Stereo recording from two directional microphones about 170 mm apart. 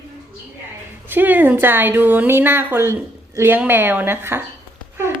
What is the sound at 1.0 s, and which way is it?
A woman's voice, 10° right (ahead or behind).